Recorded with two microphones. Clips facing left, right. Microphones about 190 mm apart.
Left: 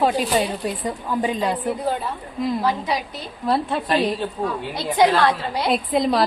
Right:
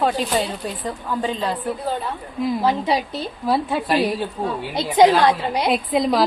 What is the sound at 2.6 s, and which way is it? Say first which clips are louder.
Speech: right 3 dB; 25° right (ahead or behind).